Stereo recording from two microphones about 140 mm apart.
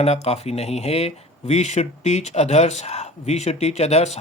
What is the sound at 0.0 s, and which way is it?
Speech, 50° left (ahead or behind).